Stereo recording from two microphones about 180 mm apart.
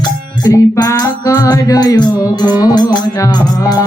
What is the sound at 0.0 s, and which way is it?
Music, 20° left (ahead or behind).